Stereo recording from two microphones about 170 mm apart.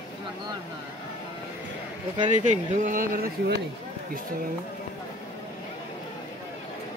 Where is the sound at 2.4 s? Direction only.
50° right (ahead or behind).